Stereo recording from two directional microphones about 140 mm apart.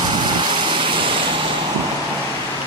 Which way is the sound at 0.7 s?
35° right (ahead or behind).